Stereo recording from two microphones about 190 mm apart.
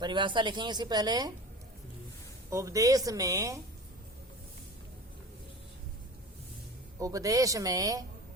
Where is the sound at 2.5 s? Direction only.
15° right (ahead or behind).